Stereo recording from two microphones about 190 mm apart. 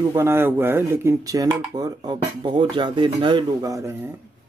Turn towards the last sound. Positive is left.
turn(degrees=-15)  # may be behind; listen again after turning